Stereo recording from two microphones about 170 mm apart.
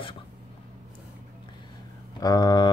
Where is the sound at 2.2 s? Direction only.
25° left (ahead or behind).